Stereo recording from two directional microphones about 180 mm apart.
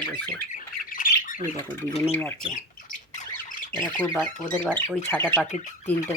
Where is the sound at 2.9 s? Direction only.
45° left (ahead or behind).